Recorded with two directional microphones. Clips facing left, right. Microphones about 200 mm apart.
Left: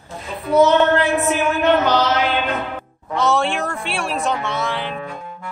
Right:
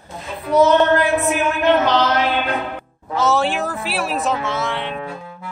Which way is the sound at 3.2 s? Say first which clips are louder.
Right 1 dB; centre (ahead or behind).